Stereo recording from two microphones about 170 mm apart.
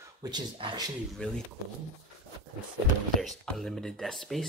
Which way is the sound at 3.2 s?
Centre (ahead or behind).